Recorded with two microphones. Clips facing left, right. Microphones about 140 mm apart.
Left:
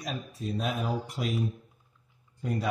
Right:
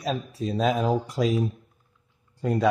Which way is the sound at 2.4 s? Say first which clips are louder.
Right 7 dB; 90° right.